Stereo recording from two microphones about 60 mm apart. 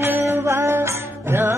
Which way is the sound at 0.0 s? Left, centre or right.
Right.